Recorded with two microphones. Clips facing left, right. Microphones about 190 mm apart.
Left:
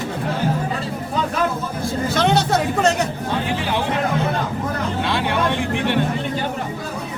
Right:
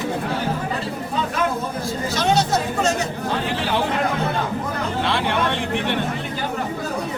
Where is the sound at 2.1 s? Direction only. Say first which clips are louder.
Left 2 dB; 60° left (ahead or behind).